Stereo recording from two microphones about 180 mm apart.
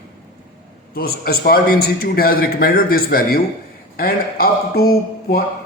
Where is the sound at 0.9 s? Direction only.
60° left (ahead or behind).